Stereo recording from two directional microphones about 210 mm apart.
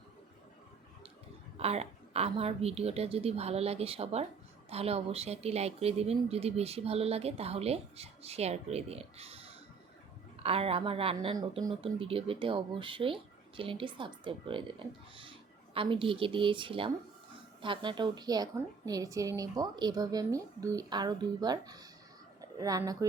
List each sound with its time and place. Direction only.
1.5 s speech: 30° right (ahead or behind)